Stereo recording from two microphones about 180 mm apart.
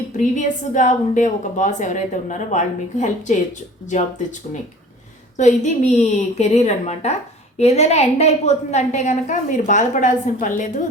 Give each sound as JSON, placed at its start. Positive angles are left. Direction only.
{"t": 0.2, "sound": "a woman's voice", "side_deg": 45}
{"t": 5.4, "sound": "a woman's voice", "side_deg": 40}